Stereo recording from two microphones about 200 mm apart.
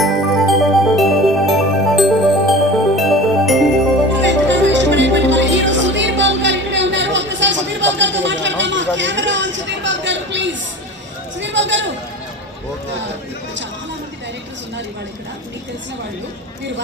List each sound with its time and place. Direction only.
0.0 s music: centre (ahead or behind)
4.2 s music: 65° right (ahead or behind)
11.3 s a sound: 65° right (ahead or behind)